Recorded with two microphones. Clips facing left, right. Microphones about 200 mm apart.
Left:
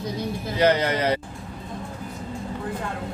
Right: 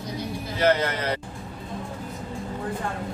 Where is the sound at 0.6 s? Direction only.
15° left (ahead or behind).